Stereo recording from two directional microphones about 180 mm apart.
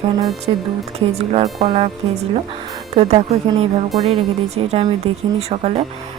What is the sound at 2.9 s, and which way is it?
Speech, 35° right (ahead or behind).